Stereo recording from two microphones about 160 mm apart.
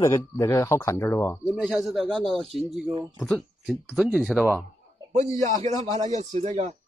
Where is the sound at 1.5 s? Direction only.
Centre (ahead or behind).